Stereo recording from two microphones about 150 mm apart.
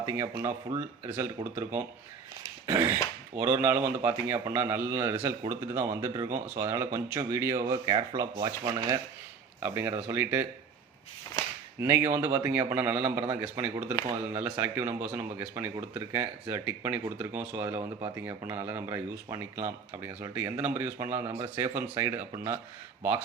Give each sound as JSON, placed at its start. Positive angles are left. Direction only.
{"t": 0.4, "sound": "speech", "side_deg": -15}
{"t": 2.6, "sound": "cough", "side_deg": -25}
{"t": 3.3, "sound": "speech", "side_deg": -15}
{"t": 6.3, "sound": "speech", "side_deg": -60}
{"t": 6.6, "sound": "speech", "side_deg": -20}
{"t": 9.6, "sound": "speech", "side_deg": -15}
{"t": 11.8, "sound": "speech", "side_deg": -15}